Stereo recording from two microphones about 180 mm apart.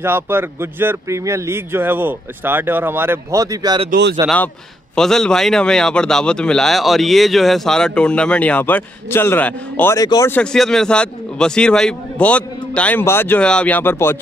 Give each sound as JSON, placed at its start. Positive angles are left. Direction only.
{"t": 0.0, "sound": "speech", "side_deg": -10}
{"t": 4.9, "sound": "speech", "side_deg": 5}
{"t": 10.3, "sound": "a man's voice", "side_deg": 5}